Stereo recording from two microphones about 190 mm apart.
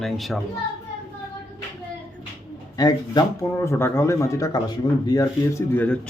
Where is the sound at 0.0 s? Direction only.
Centre (ahead or behind).